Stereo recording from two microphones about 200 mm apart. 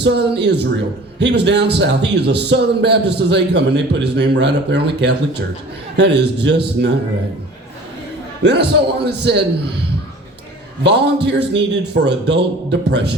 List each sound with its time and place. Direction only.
0.0 s a man's voice: 60° right (ahead or behind)
8.4 s a man's voice: 60° right (ahead or behind)
10.8 s a man's voice: 60° right (ahead or behind)